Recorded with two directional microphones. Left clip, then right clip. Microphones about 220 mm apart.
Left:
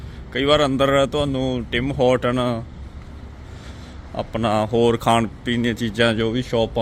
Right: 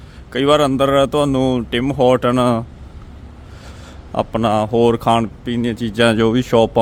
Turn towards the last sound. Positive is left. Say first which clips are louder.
# right 7 dB
turn(degrees=-35)  # may be behind; listen again after turning